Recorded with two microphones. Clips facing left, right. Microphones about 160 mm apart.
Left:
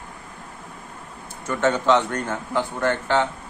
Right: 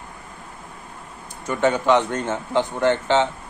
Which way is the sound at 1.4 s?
15° right (ahead or behind).